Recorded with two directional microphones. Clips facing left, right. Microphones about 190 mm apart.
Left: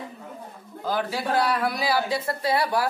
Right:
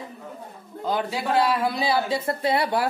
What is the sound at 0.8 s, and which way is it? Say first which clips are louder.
Speech: right 1 dB; 25° right (ahead or behind).